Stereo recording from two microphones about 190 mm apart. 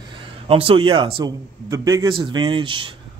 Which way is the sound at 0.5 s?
30° right (ahead or behind).